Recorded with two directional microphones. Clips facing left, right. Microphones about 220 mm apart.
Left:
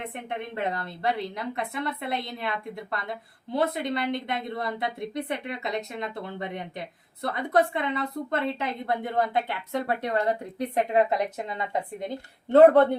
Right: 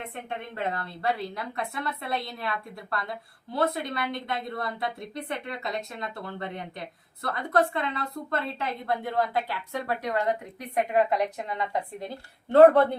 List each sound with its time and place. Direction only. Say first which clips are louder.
0.1 s a woman's voice: left 2 dB; 20° left (ahead or behind)